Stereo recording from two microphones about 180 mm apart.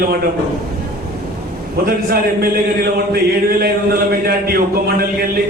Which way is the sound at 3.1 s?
60° right (ahead or behind).